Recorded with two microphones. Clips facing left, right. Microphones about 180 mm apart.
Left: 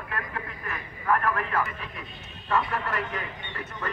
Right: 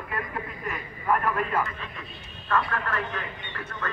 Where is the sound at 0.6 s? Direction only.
15° right (ahead or behind).